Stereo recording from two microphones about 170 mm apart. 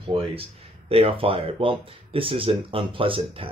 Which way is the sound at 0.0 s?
35° right (ahead or behind).